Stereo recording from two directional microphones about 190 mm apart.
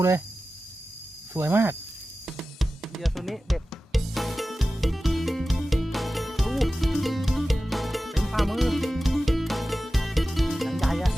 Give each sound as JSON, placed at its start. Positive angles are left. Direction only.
{"t": 1.3, "sound": "speech", "side_deg": -10}
{"t": 2.2, "sound": "drum", "side_deg": 0}